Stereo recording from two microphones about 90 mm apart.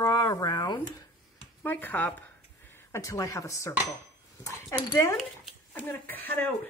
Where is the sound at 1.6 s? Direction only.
20° left (ahead or behind).